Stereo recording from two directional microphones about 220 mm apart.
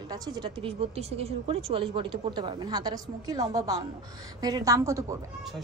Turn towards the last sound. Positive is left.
turn(degrees=-15)  # may be behind; listen again after turning